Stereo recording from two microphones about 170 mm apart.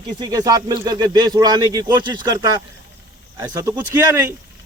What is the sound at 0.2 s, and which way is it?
Speech, 20° right (ahead or behind).